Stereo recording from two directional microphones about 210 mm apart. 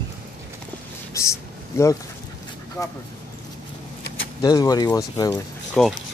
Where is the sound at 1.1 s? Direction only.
15° left (ahead or behind).